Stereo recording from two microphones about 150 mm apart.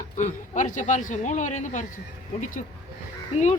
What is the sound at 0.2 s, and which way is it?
A man's voice, 55° left (ahead or behind).